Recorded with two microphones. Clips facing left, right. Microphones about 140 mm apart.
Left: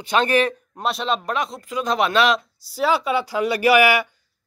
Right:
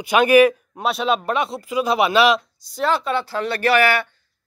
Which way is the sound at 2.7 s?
5° left (ahead or behind).